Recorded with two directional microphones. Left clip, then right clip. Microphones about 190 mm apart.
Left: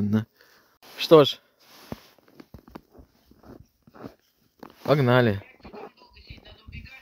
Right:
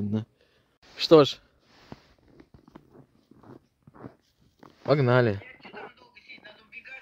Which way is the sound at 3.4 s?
90° left.